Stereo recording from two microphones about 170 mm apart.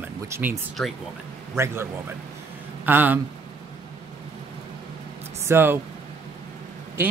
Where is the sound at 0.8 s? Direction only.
5° left (ahead or behind).